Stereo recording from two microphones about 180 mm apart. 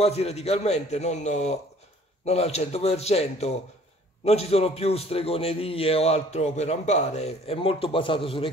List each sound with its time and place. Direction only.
0.0 s a man's voice: 35° left (ahead or behind)